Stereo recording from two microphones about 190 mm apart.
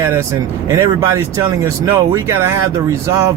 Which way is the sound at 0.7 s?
15° right (ahead or behind).